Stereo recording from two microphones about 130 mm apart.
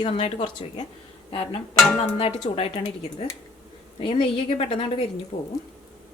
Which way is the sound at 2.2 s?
45° left (ahead or behind).